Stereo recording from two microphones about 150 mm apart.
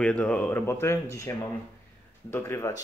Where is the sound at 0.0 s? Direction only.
10° left (ahead or behind).